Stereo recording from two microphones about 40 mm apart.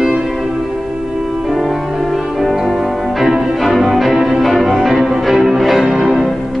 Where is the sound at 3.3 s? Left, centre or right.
Centre.